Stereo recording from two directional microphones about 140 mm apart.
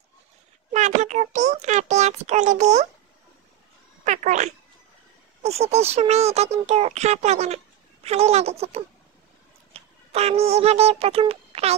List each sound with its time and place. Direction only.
0.7 s a child's voice: 60° right (ahead or behind)
4.0 s speech: 60° right (ahead or behind)
5.4 s speech: 50° right (ahead or behind)